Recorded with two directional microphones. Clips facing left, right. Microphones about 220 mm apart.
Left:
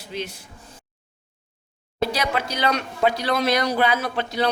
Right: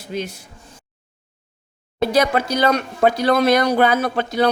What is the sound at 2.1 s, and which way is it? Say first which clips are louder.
A man's voice: right 8 dB; 45° right (ahead or behind).